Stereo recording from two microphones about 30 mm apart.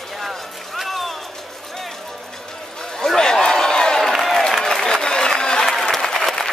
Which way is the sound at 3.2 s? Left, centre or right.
Centre.